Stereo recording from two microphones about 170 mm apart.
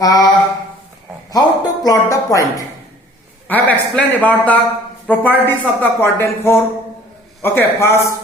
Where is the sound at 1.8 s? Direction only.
20° left (ahead or behind).